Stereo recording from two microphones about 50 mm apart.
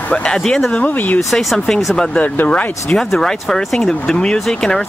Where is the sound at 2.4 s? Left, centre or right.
Left.